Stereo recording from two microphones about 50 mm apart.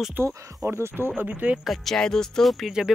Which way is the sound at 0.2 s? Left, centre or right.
Right.